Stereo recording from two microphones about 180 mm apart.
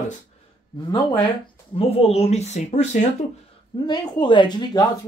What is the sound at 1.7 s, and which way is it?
Speech, 35° left (ahead or behind).